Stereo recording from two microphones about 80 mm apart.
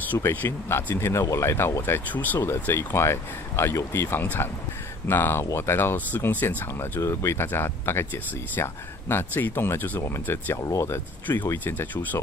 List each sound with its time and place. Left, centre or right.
0.1 s speech: left
9.1 s speech: left
10.6 s speech: left
11.5 s speech: left